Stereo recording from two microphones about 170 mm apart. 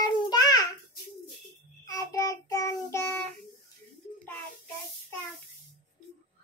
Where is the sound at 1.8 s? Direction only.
20° left (ahead or behind).